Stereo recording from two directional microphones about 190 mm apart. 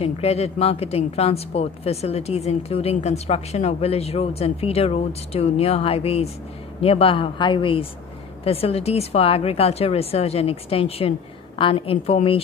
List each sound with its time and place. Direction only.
0.0 s a woman's voice: 30° left (ahead or behind)